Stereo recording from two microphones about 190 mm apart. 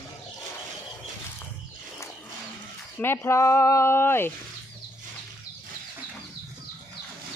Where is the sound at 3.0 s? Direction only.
15° left (ahead or behind).